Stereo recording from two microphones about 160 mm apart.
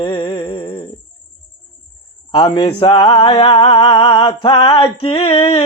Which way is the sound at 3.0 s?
25° left (ahead or behind).